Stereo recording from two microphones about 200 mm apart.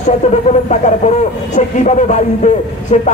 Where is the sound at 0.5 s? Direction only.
35° left (ahead or behind).